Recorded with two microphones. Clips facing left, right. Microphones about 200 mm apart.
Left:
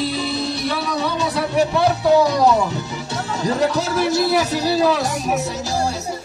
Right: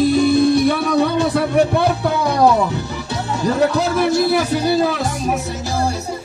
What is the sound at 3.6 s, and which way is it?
Speech, 60° right (ahead or behind).